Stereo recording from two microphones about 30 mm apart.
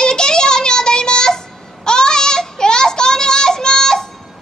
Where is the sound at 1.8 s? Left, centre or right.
Left.